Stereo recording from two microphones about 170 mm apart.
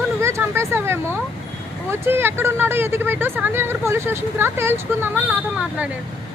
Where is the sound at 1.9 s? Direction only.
15° right (ahead or behind).